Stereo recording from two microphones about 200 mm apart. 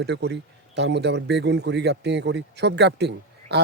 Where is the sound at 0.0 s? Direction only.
55° right (ahead or behind).